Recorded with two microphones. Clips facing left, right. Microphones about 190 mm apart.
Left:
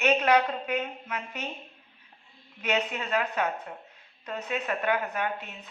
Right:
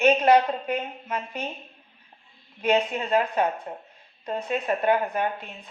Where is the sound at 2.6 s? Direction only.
35° right (ahead or behind).